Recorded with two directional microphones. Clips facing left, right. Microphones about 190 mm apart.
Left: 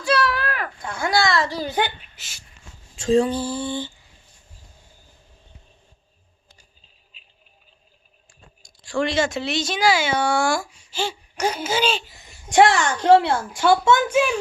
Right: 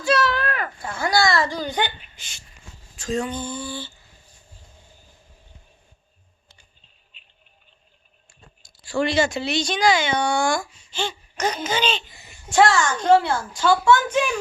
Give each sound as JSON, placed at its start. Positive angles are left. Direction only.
{"t": 0.0, "sound": "a sound", "side_deg": 0}
{"t": 2.9, "sound": "speech", "side_deg": 30}
{"t": 8.3, "sound": "speech", "side_deg": 0}